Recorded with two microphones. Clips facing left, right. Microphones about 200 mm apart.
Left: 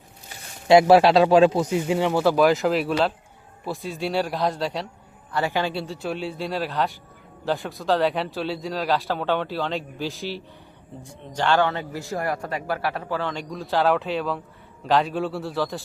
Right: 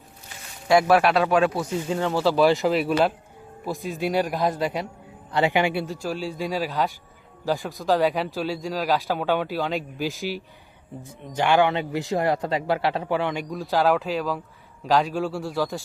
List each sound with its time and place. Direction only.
0.7 s speech: 25° left (ahead or behind)
2.5 s a man's voice: centre (ahead or behind)
5.3 s speech: 15° right (ahead or behind)
5.8 s a man's voice: centre (ahead or behind)
6.3 s speech: 10° right (ahead or behind)
6.7 s a man's voice: centre (ahead or behind)
13.5 s a man's voice: centre (ahead or behind)